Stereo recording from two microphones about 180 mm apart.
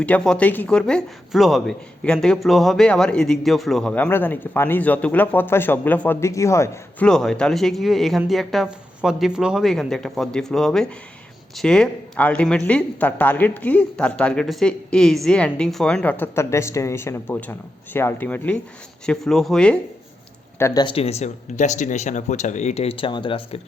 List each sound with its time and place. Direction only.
0.0 s speech: 5° left (ahead or behind)
7.1 s speech: 5° left (ahead or behind)
20.6 s speech: 15° left (ahead or behind)
20.8 s speech: 35° left (ahead or behind)